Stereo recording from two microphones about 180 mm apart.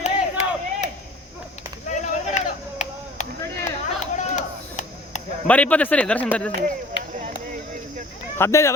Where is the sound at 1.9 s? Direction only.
40° left (ahead or behind).